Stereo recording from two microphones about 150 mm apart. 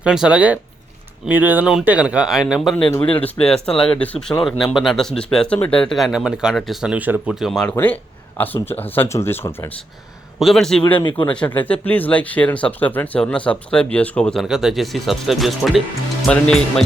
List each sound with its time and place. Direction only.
0.0 s speech: 5° right (ahead or behind)
3.2 s speech: 10° left (ahead or behind)
10.4 s speech: centre (ahead or behind)
10.9 s speech: 30° left (ahead or behind)
11.3 s speech: 10° left (ahead or behind)